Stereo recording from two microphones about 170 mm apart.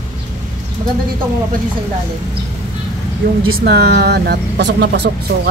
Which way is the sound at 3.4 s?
70° right (ahead or behind).